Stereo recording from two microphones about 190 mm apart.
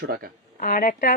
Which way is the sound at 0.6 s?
45° left (ahead or behind).